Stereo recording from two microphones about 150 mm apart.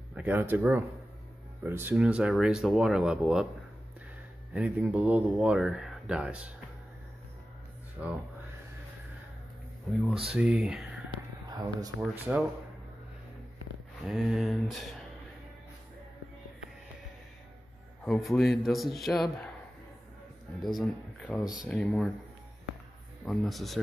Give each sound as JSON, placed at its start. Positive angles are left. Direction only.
{"t": 0.1, "sound": "speech", "side_deg": -10}
{"t": 4.6, "sound": "speech", "side_deg": -10}
{"t": 8.0, "sound": "speech", "side_deg": -10}
{"t": 10.2, "sound": "speech", "side_deg": -5}
{"t": 11.5, "sound": "speech", "side_deg": -25}
{"t": 12.0, "sound": "speech", "side_deg": -10}
{"t": 14.0, "sound": "speech", "side_deg": 0}
{"t": 18.0, "sound": "speech", "side_deg": 0}
{"t": 20.6, "sound": "speech", "side_deg": 0}
{"t": 23.2, "sound": "speech", "side_deg": 0}